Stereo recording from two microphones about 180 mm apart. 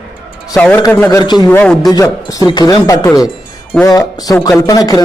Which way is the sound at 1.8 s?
20° left (ahead or behind).